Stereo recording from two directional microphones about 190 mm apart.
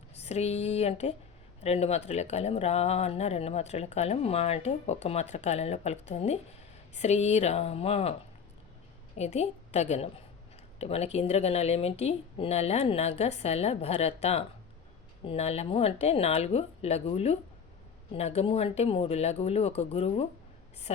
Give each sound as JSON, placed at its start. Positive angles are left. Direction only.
{"t": 0.2, "sound": "speech", "side_deg": 35}
{"t": 9.1, "sound": "a woman's voice", "side_deg": 35}